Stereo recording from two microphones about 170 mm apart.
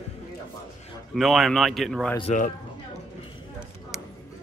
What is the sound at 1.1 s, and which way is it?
Speech, centre (ahead or behind).